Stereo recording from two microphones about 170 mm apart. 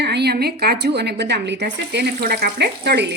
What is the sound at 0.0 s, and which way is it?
A woman's voice, 75° right (ahead or behind).